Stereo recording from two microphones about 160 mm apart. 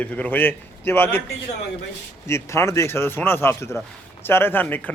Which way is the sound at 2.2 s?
15° left (ahead or behind).